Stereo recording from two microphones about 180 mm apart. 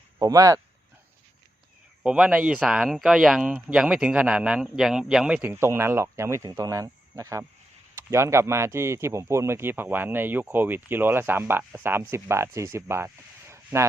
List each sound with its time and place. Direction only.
0.2 s speech: 20° right (ahead or behind)
2.0 s speech: 5° right (ahead or behind)
13.5 s a sound: 15° right (ahead or behind)